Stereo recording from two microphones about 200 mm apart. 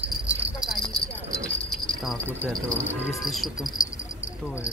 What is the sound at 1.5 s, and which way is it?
Keys jangling, 5° left (ahead or behind).